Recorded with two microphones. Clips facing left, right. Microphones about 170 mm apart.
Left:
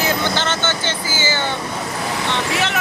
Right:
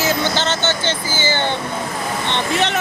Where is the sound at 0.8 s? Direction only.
10° left (ahead or behind).